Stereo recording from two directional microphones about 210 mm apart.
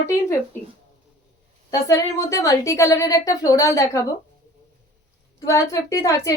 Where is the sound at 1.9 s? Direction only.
15° left (ahead or behind).